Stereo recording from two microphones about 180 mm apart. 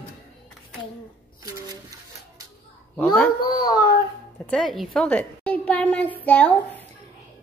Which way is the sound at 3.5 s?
20° left (ahead or behind).